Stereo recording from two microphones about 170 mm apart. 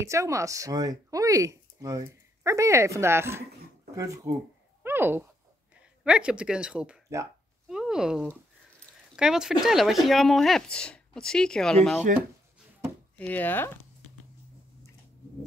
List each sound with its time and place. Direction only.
0.0 s a woman's voice: 15° right (ahead or behind)
7.6 s a sound: centre (ahead or behind)
9.1 s speech: 5° right (ahead or behind)
13.2 s speech: 10° left (ahead or behind)